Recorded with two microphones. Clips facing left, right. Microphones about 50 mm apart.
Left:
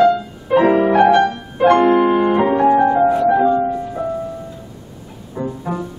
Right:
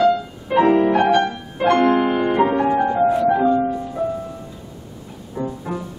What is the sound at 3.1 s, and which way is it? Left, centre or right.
Music, centre.